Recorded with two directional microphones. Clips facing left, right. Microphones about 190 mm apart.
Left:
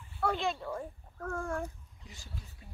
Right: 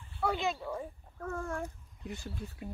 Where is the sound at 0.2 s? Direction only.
5° right (ahead or behind).